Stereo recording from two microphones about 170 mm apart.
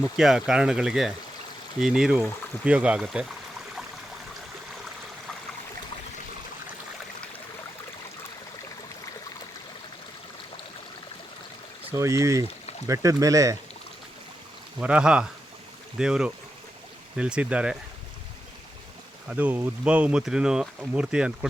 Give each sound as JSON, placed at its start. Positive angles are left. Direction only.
{"t": 0.2, "sound": "speech", "side_deg": 0}
{"t": 11.9, "sound": "speech", "side_deg": -20}
{"t": 14.8, "sound": "speech", "side_deg": -5}
{"t": 19.3, "sound": "speech", "side_deg": -10}